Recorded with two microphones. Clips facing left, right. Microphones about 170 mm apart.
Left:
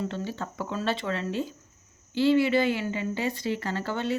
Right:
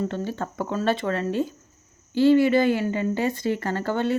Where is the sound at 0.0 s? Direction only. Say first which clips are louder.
Right 4 dB; 50° right (ahead or behind).